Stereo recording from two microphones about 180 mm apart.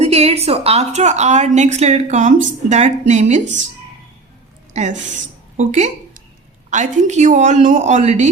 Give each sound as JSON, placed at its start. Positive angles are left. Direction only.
{"t": 0.0, "sound": "a woman's voice", "side_deg": -35}
{"t": 4.7, "sound": "a woman's voice", "side_deg": -40}
{"t": 5.5, "sound": "a sound", "side_deg": -40}
{"t": 6.7, "sound": "a woman's voice", "side_deg": -40}